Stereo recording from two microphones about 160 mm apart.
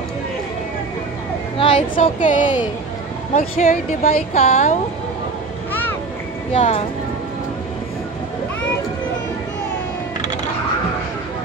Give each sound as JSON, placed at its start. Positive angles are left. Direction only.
{"t": 1.6, "sound": "speech", "side_deg": 35}
{"t": 2.1, "sound": "a woman's voice", "side_deg": 55}
{"t": 4.5, "sound": "a woman's voice", "side_deg": 45}
{"t": 5.7, "sound": "vehicle", "side_deg": 10}
{"t": 6.5, "sound": "a woman's voice", "side_deg": 40}